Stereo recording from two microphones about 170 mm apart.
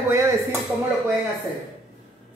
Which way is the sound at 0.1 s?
15° right (ahead or behind).